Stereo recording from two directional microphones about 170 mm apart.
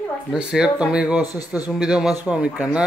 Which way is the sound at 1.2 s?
20° left (ahead or behind).